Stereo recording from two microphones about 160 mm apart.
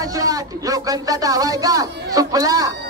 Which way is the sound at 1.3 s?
20° right (ahead or behind).